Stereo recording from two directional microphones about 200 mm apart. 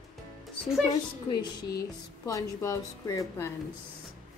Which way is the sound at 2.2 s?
15° left (ahead or behind).